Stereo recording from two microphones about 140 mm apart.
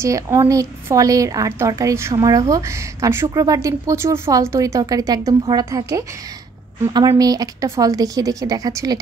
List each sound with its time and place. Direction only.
0.0 s a woman's voice: 20° right (ahead or behind)